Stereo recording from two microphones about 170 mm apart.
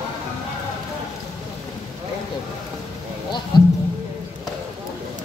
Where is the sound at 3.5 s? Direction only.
25° left (ahead or behind).